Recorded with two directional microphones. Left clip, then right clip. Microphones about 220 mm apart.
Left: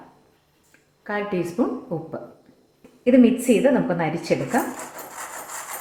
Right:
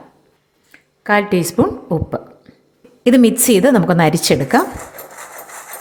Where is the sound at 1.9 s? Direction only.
45° right (ahead or behind).